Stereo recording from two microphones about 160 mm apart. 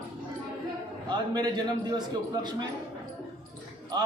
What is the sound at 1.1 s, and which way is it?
Speech, 25° right (ahead or behind).